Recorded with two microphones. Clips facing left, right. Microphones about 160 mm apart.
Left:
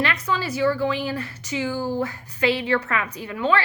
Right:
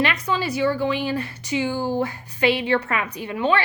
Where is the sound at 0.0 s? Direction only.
20° right (ahead or behind).